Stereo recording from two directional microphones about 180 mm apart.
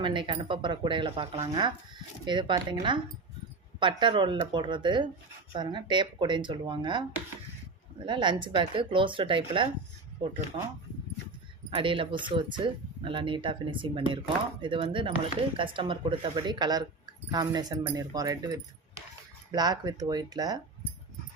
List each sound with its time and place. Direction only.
0.0 s speech: 25° right (ahead or behind)
8.0 s speech: 25° right (ahead or behind)
11.7 s speech: 30° right (ahead or behind)